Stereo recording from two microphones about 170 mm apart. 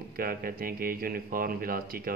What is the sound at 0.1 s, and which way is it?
Speech, 60° right (ahead or behind).